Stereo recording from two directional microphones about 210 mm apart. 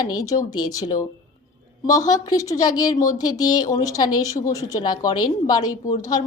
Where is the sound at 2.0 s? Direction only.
20° left (ahead or behind).